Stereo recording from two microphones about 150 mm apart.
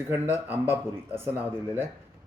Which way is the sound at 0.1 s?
10° right (ahead or behind).